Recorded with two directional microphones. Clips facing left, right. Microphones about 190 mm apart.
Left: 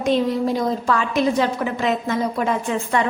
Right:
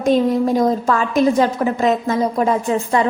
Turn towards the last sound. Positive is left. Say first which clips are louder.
# right 4 dB
turn(degrees=-35)  # may be behind; listen again after turning